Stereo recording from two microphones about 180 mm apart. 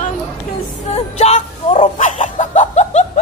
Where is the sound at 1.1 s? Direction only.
35° left (ahead or behind).